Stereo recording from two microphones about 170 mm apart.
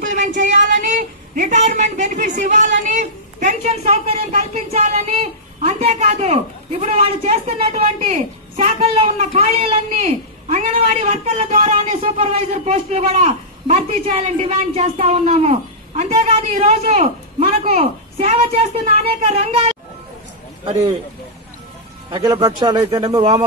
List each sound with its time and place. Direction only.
0.0 s a sound: 45° right (ahead or behind)
2.8 s a woman's voice: 45° right (ahead or behind)
22.1 s a man's voice: 25° right (ahead or behind)